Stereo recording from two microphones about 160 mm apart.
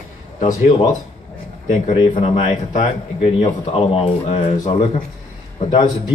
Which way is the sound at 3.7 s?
35° left (ahead or behind).